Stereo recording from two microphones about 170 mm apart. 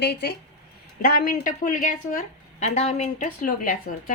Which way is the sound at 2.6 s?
40° left (ahead or behind).